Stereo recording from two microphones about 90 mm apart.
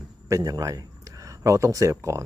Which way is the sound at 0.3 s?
40° right (ahead or behind).